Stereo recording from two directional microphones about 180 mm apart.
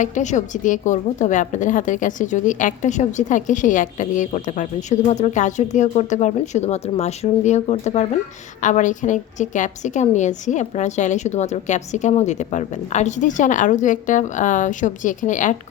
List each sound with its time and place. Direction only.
0.0 s a woman's voice: 40° left (ahead or behind)